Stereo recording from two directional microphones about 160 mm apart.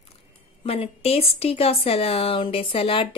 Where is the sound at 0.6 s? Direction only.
35° left (ahead or behind).